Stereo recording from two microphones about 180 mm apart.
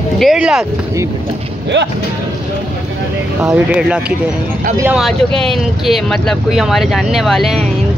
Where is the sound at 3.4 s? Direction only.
5° right (ahead or behind).